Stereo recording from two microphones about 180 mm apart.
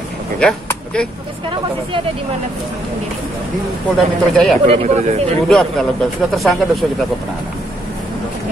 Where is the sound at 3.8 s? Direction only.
Centre (ahead or behind).